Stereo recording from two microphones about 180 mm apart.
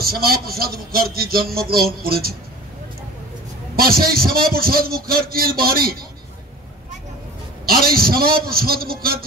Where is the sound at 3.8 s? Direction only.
55° right (ahead or behind).